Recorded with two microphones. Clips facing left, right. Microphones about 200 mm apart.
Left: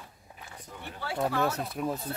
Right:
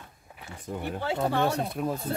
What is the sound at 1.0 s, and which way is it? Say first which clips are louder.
Speech: right 2 dB; 25° right (ahead or behind).